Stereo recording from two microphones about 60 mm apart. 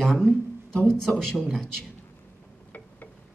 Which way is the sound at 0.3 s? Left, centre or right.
Right.